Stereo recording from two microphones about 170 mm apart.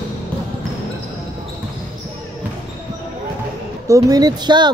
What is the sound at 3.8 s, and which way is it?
Speech, 20° right (ahead or behind).